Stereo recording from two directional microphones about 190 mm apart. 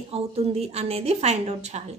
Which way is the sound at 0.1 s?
35° right (ahead or behind).